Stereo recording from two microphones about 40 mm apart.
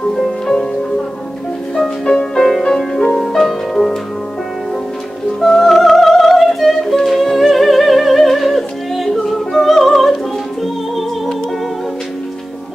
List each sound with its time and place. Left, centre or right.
2.0 s music: centre
3.3 s music: centre
5.4 s music: centre